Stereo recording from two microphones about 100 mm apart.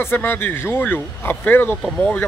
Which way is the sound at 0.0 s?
20° left (ahead or behind).